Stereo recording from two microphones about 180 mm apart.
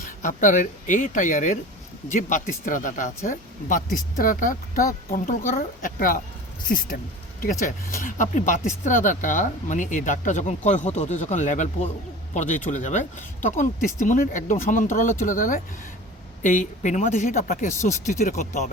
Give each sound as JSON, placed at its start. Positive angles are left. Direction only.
{"t": 0.0, "sound": "speech", "side_deg": 45}